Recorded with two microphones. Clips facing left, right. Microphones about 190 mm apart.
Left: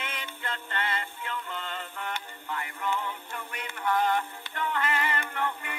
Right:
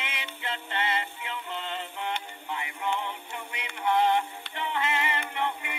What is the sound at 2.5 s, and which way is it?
Music, 20° right (ahead or behind).